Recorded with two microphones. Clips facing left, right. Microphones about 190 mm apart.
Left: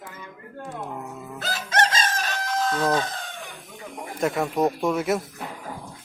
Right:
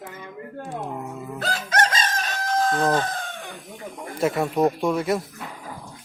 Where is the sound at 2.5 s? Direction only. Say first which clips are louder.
Right 2 dB; 50° right (ahead or behind).